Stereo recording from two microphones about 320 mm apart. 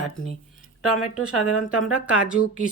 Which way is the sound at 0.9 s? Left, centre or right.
Centre.